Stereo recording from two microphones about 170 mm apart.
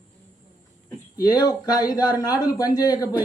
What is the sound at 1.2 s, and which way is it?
A woman's voice, 20° left (ahead or behind).